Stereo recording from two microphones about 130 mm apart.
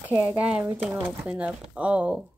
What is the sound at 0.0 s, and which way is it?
Speech, 15° right (ahead or behind).